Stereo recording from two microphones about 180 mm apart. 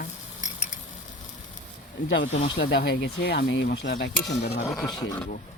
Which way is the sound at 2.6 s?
75° left (ahead or behind).